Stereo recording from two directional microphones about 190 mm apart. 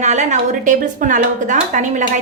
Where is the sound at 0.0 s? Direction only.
40° right (ahead or behind).